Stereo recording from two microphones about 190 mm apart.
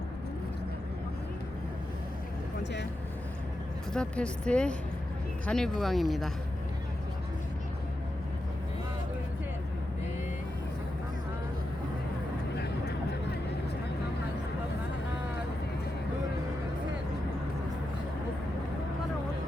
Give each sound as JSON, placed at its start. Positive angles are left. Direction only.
{"t": 3.9, "sound": "speech", "side_deg": 5}
{"t": 12.5, "sound": "vehicle", "side_deg": 60}